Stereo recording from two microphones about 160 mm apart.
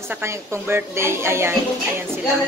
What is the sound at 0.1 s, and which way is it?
A woman's voice, 15° right (ahead or behind).